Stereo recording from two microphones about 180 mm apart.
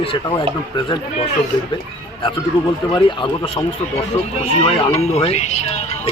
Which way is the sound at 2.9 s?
30° left (ahead or behind).